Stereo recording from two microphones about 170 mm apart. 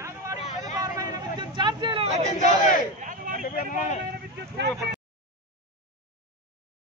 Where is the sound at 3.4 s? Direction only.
50° left (ahead or behind).